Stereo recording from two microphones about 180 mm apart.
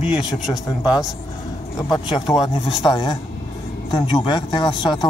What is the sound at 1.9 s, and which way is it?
Speech, 25° left (ahead or behind).